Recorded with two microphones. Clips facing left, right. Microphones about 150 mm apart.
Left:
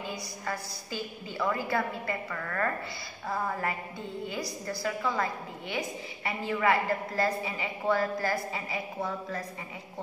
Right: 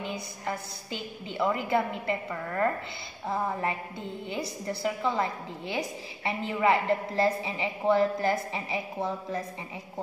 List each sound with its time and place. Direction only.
0.0 s a woman's voice: 25° right (ahead or behind)